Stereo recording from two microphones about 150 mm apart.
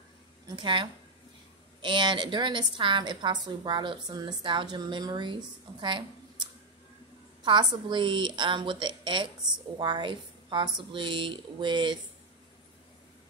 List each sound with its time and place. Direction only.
0.6 s a woman's voice: 35° right (ahead or behind)
5.8 s a sound: 30° right (ahead or behind)
7.4 s a woman's voice: 35° right (ahead or behind)